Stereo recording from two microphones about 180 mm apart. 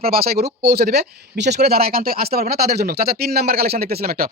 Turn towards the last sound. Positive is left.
turn(degrees=-55)  # may be behind; listen again after turning